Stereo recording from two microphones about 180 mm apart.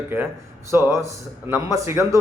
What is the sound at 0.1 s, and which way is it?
Speech, 10° right (ahead or behind).